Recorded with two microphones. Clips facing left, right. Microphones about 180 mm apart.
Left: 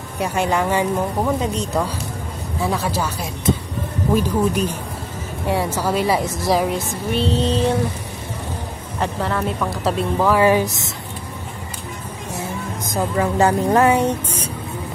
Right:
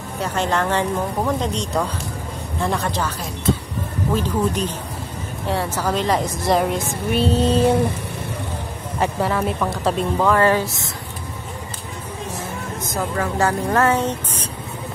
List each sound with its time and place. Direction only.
0.2 s a woman's voice: 10° left (ahead or behind)
9.0 s a woman's voice: 5° right (ahead or behind); by 10.9 s 20° left (ahead or behind)
12.8 s speech: 15° left (ahead or behind)